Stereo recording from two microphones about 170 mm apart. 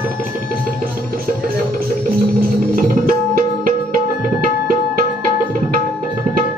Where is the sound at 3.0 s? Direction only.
55° right (ahead or behind).